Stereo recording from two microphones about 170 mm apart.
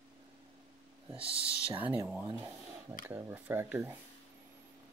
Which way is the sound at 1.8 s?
10° right (ahead or behind).